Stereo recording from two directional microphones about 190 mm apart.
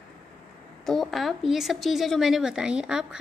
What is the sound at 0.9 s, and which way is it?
Speech, centre (ahead or behind).